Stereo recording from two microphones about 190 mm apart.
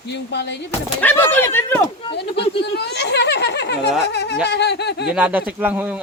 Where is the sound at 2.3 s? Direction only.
30° left (ahead or behind).